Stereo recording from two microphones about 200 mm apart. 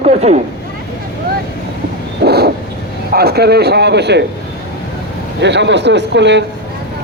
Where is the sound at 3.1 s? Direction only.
50° right (ahead or behind).